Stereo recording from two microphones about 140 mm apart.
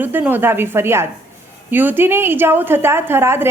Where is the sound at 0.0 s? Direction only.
15° right (ahead or behind).